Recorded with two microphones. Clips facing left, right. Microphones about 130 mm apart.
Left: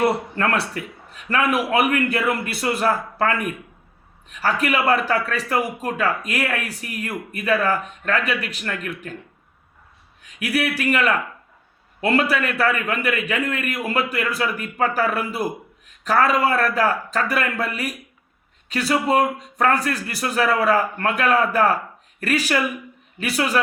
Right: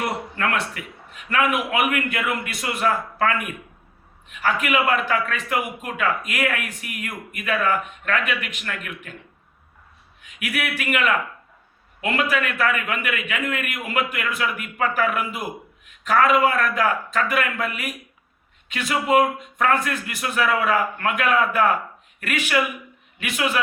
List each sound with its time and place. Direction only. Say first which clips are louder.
0.0 s a man's voice: left 5 dB; 35° left (ahead or behind)
10.2 s a man's voice: left 5 dB; 35° left (ahead or behind)